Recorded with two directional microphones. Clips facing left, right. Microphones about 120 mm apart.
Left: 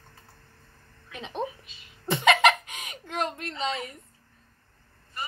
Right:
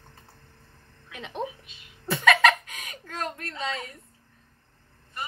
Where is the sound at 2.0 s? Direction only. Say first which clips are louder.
Even; 20° left (ahead or behind).